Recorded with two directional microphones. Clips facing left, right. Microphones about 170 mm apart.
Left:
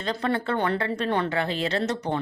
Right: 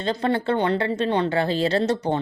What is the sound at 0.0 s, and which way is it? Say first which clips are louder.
A woman's voice: right 4 dB; 30° right (ahead or behind).